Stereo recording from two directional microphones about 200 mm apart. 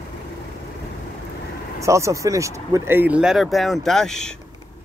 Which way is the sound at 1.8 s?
15° right (ahead or behind).